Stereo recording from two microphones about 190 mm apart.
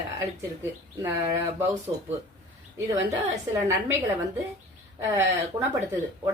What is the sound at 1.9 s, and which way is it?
A woman's voice, 30° right (ahead or behind).